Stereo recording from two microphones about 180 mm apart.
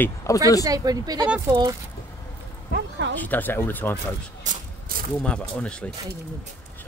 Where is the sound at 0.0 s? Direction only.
15° left (ahead or behind).